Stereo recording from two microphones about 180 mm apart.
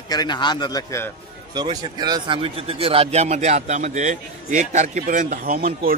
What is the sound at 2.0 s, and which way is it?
A man's voice, 25° right (ahead or behind).